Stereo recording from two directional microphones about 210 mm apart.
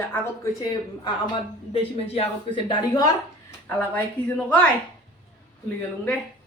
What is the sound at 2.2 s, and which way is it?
Speech, 25° left (ahead or behind).